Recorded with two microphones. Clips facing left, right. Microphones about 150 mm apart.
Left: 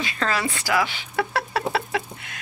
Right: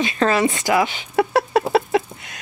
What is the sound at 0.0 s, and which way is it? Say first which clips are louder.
Speech: right 8 dB; 20° right (ahead or behind).